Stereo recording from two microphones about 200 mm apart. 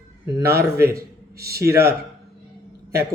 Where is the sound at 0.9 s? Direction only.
50° right (ahead or behind).